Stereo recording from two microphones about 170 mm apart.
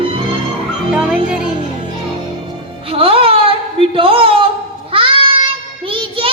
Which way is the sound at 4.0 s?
30° right (ahead or behind).